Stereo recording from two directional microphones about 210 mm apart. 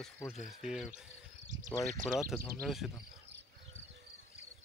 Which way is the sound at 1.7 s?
15° left (ahead or behind).